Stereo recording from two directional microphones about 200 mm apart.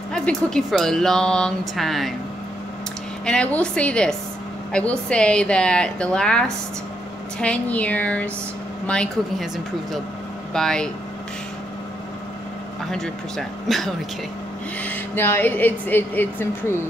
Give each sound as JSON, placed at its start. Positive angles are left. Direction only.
{"t": 0.1, "sound": "speech", "side_deg": 5}
{"t": 3.3, "sound": "speech", "side_deg": 5}
{"t": 10.5, "sound": "speech", "side_deg": 5}
{"t": 12.9, "sound": "speech", "side_deg": 0}